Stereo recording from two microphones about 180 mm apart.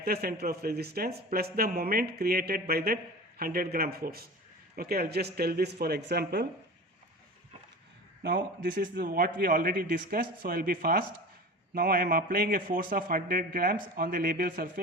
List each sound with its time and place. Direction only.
0.0 s speech: 60° right (ahead or behind)
8.2 s a man's voice: 60° right (ahead or behind)